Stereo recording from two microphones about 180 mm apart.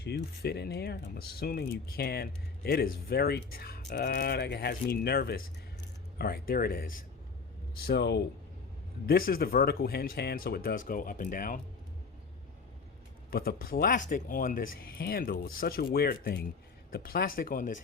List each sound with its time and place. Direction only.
0.0 s speech: 65° left (ahead or behind)
7.9 s speech: 70° left (ahead or behind)
9.0 s speech: 55° left (ahead or behind)
13.3 s speech: 55° left (ahead or behind)